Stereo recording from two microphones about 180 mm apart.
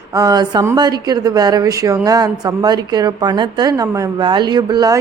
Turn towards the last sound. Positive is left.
turn(degrees=-25)  # may be behind; listen again after turning